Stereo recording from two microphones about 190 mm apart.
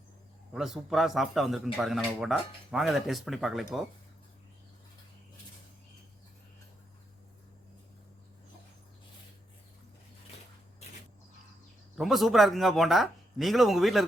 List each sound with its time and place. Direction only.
0.5 s speech: centre (ahead or behind)
11.9 s speech: centre (ahead or behind)